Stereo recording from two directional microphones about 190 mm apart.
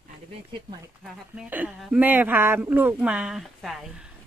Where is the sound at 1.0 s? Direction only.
5° right (ahead or behind).